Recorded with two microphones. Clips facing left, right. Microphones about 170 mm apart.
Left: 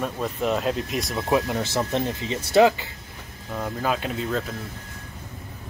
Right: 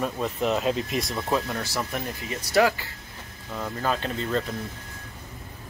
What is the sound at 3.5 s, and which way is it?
Speech, 10° left (ahead or behind).